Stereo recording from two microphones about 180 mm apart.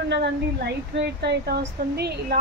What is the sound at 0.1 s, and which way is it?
Speech, 70° right (ahead or behind).